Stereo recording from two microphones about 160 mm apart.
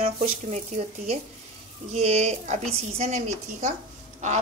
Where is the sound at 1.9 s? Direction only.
40° right (ahead or behind).